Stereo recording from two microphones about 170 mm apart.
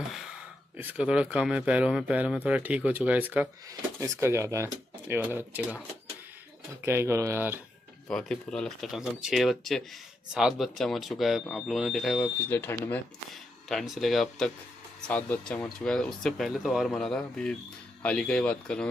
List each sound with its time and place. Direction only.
0.1 s speech: 5° right (ahead or behind)
6.8 s speech: 15° right (ahead or behind)
8.1 s speech: 5° left (ahead or behind)
12.4 s speech: 15° left (ahead or behind)
13.3 s speech: centre (ahead or behind)